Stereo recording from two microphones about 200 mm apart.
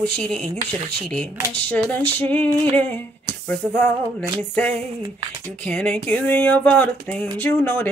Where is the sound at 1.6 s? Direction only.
10° left (ahead or behind).